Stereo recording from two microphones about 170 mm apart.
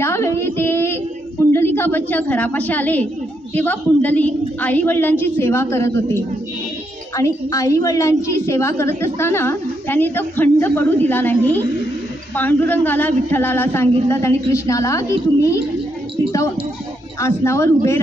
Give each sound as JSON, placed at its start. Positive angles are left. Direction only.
{"t": 0.0, "sound": "child singing", "side_deg": 15}
{"t": 1.5, "sound": "a woman's voice", "side_deg": 15}
{"t": 7.2, "sound": "a woman's voice", "side_deg": 20}